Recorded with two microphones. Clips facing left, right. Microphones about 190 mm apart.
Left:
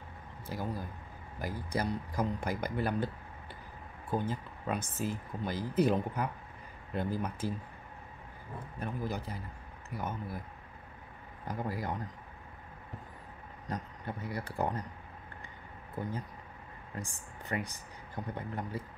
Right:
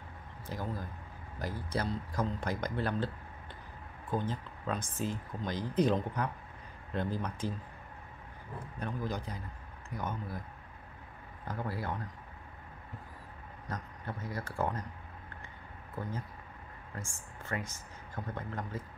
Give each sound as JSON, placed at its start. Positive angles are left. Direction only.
{"t": 0.5, "sound": "speech", "side_deg": 10}
{"t": 4.1, "sound": "speech", "side_deg": 10}
{"t": 8.7, "sound": "speech", "side_deg": 10}
{"t": 11.4, "sound": "speech", "side_deg": 15}
{"t": 13.7, "sound": "speech", "side_deg": 15}
{"t": 16.9, "sound": "speech", "side_deg": 15}